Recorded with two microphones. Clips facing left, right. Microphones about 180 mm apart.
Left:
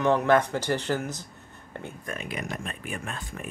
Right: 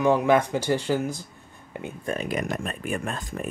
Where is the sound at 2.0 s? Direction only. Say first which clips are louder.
Right 8 dB; 35° right (ahead or behind).